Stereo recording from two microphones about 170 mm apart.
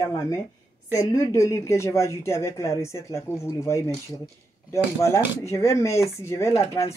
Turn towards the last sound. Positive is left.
turn(degrees=15)  # may be behind; listen again after turning